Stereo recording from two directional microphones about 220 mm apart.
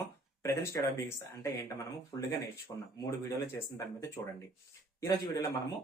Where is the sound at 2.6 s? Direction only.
15° left (ahead or behind).